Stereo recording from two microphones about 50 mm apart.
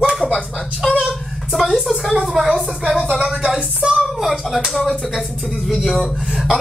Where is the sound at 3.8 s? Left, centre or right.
Right.